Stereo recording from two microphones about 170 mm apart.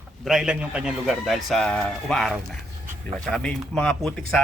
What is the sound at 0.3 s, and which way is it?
A man's voice, 5° right (ahead or behind).